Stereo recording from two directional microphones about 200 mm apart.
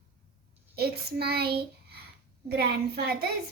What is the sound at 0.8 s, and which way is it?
Speech, 55° right (ahead or behind).